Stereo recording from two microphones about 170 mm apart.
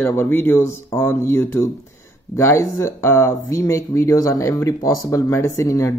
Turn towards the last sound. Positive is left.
turn(degrees=20)  # may be behind; listen again after turning